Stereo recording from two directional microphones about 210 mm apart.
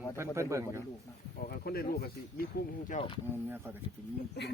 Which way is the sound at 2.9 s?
35° left (ahead or behind).